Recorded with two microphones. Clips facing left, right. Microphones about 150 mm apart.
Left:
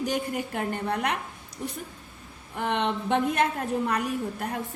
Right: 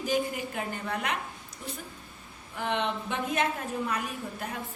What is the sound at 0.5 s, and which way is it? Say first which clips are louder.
Speech: left 5 dB; 60° left (ahead or behind).